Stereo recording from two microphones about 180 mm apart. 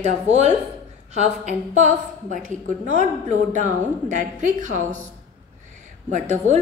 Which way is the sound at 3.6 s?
45° right (ahead or behind).